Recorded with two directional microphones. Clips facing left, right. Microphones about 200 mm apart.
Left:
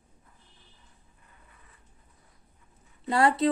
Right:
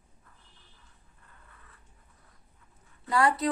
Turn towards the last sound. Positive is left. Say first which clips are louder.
# left 2 dB
turn(degrees=25)  # may be behind; listen again after turning